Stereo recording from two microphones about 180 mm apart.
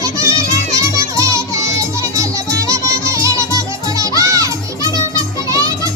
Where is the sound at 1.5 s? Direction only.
15° right (ahead or behind).